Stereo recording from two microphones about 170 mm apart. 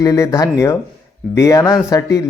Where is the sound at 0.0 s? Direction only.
20° left (ahead or behind).